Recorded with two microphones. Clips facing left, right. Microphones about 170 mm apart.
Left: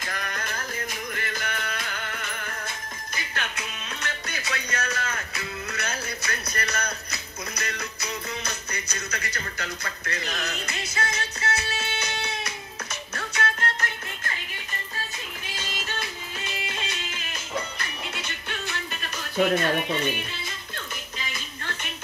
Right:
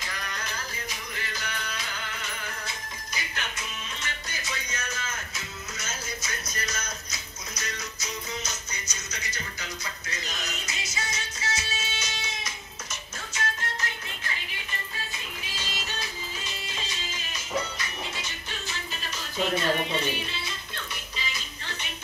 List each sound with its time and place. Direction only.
0.0 s music: 50° left (ahead or behind)
3.3 s music: 65° left (ahead or behind)
16.6 s music: 60° left (ahead or behind)